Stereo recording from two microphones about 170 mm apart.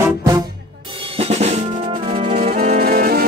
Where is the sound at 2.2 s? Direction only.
55° right (ahead or behind).